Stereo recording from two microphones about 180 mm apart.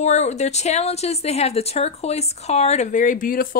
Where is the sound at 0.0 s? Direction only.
40° left (ahead or behind).